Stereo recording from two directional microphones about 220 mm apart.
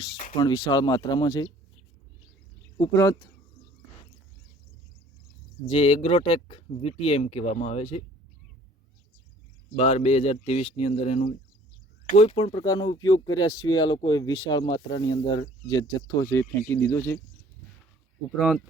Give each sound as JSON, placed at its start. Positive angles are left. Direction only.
{"t": 0.3, "sound": "speech", "side_deg": 20}
{"t": 2.7, "sound": "speech", "side_deg": 15}
{"t": 5.6, "sound": "speech", "side_deg": 25}
{"t": 9.7, "sound": "speech", "side_deg": 30}
{"t": 18.3, "sound": "speech", "side_deg": 0}